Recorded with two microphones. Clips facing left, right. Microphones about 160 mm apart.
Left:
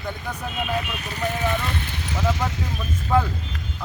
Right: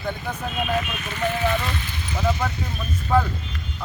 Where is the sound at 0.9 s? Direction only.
35° left (ahead or behind).